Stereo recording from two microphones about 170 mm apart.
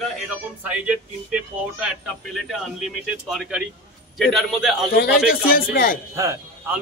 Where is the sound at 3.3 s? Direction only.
5° right (ahead or behind).